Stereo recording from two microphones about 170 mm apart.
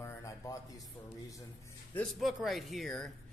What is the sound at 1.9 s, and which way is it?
Speech, 5° left (ahead or behind).